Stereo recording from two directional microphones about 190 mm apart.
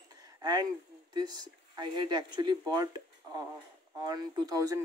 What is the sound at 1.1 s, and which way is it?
Speech, 20° right (ahead or behind).